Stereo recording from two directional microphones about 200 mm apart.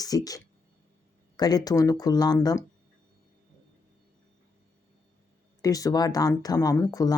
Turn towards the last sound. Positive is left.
turn(degrees=15)  # may be behind; listen again after turning